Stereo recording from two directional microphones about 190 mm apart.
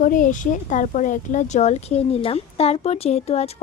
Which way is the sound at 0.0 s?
45° left (ahead or behind).